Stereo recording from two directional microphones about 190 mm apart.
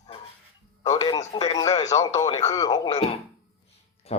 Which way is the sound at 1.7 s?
35° left (ahead or behind).